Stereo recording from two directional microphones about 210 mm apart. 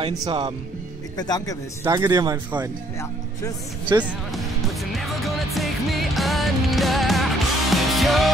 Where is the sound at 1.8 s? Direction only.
15° right (ahead or behind).